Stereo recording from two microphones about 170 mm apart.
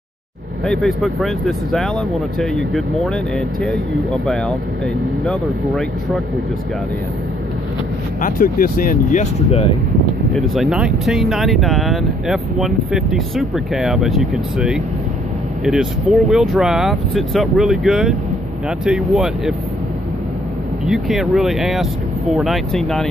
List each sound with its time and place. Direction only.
0.7 s speech: centre (ahead or behind)
5.2 s speech: 5° left (ahead or behind)
8.2 s speech: 55° left (ahead or behind); by 9.8 s 35° left (ahead or behind)
10.3 s speech: centre (ahead or behind)
20.8 s speech: centre (ahead or behind)